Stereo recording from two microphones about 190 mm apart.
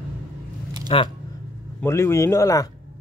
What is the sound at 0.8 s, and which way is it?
Speech, 25° left (ahead or behind).